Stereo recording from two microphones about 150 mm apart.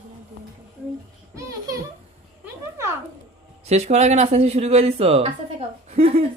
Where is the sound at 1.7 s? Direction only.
25° right (ahead or behind).